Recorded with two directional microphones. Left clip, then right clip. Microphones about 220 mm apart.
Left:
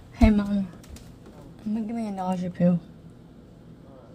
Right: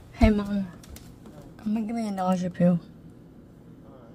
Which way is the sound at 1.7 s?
20° right (ahead or behind).